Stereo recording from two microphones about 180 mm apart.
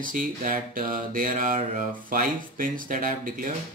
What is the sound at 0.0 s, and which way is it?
Mantra, 50° right (ahead or behind).